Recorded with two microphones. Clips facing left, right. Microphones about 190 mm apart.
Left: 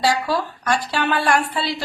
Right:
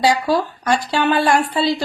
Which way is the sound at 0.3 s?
25° right (ahead or behind).